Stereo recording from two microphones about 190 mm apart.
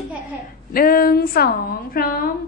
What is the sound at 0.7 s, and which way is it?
A woman's voice, 50° left (ahead or behind).